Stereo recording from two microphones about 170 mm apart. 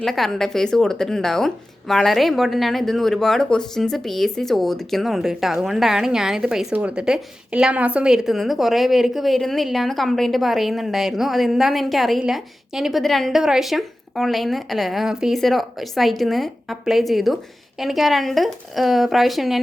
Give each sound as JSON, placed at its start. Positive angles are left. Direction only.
{"t": 0.0, "sound": "a woman's voice", "side_deg": 0}